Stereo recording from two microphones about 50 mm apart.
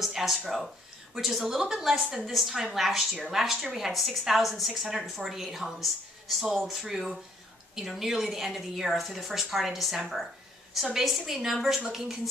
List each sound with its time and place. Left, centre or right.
0.0 s a woman's voice: centre
2.0 s speech: centre
2.3 s a woman's voice: centre